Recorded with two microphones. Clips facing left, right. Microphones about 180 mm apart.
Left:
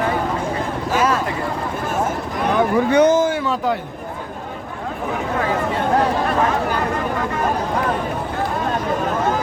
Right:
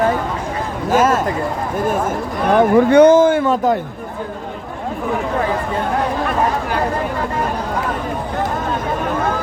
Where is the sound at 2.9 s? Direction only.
55° right (ahead or behind).